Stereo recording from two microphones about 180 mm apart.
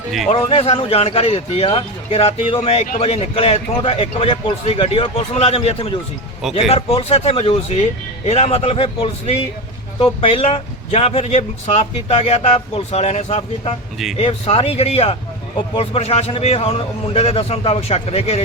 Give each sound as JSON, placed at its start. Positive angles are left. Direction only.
{"t": 0.3, "sound": "speech", "side_deg": 35}